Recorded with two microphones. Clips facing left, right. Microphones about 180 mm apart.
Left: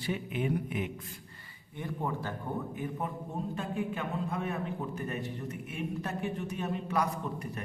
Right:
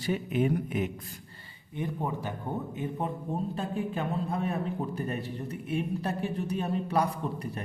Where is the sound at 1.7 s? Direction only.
15° right (ahead or behind).